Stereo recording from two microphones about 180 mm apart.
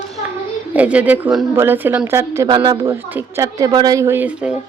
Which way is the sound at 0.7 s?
5° right (ahead or behind).